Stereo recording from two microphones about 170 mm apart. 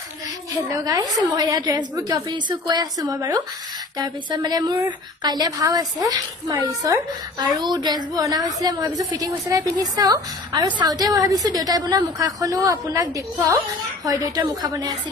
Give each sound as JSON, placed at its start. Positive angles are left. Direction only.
{"t": 0.7, "sound": "a woman's voice", "side_deg": -20}